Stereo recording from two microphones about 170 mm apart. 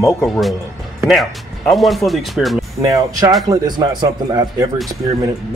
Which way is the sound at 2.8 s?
20° right (ahead or behind).